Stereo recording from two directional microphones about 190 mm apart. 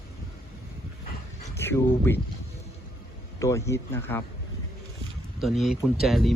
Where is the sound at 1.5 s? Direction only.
10° left (ahead or behind).